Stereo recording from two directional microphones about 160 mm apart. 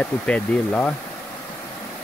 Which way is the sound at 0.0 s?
10° left (ahead or behind).